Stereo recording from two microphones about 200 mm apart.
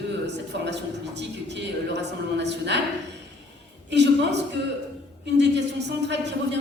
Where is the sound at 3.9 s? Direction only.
60° right (ahead or behind).